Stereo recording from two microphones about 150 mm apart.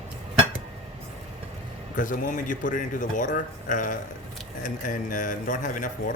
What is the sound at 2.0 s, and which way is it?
A man's voice, 60° left (ahead or behind).